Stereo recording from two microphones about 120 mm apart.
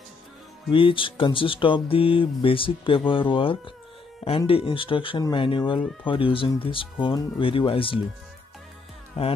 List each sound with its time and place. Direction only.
0.7 s speech: 45° left (ahead or behind)
9.2 s speech: 55° left (ahead or behind)